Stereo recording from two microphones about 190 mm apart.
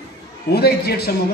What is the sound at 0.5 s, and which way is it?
Speech, 60° left (ahead or behind).